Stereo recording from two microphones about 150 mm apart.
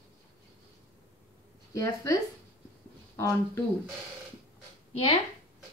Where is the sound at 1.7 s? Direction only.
20° left (ahead or behind).